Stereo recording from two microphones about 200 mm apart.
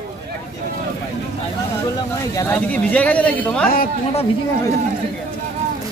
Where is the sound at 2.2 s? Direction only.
15° left (ahead or behind).